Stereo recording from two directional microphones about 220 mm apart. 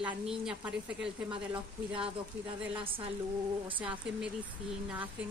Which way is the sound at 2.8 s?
25° right (ahead or behind).